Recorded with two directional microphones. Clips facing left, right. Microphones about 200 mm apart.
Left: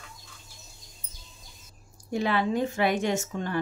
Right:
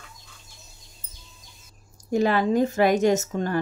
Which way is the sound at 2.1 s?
40° right (ahead or behind).